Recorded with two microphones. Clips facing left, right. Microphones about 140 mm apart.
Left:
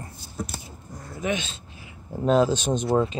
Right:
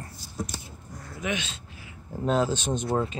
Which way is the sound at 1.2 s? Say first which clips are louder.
Left 4 dB; 35° left (ahead or behind).